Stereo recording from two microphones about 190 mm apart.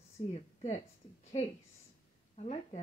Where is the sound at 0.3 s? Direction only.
35° left (ahead or behind).